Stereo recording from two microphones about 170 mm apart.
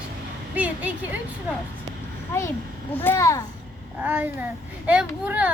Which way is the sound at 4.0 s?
10° right (ahead or behind).